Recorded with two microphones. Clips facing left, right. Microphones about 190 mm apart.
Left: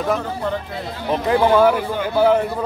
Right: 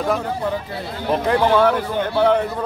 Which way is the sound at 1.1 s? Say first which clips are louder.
Left 1 dB; centre (ahead or behind).